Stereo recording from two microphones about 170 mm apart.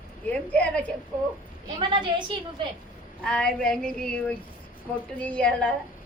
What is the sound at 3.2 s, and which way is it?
A woman's voice, 5° left (ahead or behind).